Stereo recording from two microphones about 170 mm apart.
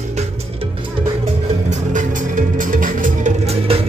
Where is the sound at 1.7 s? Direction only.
50° right (ahead or behind).